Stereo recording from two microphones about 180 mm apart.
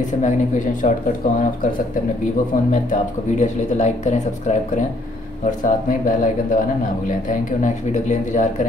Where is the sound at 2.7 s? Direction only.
40° left (ahead or behind).